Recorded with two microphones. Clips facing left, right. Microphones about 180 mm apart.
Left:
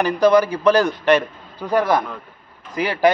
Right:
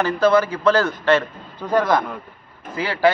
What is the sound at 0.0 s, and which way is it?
A man's voice, 15° left (ahead or behind).